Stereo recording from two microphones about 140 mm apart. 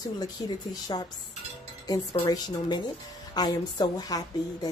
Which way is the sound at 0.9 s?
30° left (ahead or behind).